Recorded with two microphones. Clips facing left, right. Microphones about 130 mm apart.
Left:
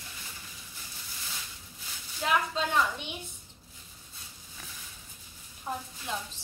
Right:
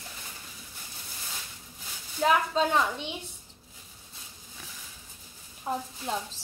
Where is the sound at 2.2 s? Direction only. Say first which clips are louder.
Right 5 dB; 40° right (ahead or behind).